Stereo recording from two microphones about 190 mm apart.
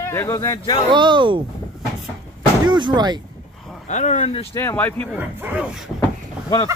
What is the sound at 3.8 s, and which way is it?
Speech, 40° left (ahead or behind).